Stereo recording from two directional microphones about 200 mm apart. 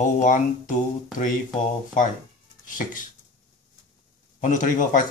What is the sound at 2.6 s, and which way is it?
Speech, 40° left (ahead or behind).